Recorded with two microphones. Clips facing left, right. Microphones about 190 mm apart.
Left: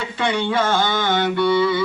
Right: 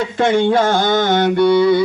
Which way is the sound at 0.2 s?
45° right (ahead or behind).